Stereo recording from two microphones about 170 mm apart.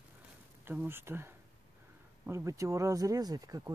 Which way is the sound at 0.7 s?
15° right (ahead or behind).